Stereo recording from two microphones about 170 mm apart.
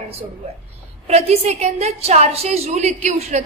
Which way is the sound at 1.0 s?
40° right (ahead or behind).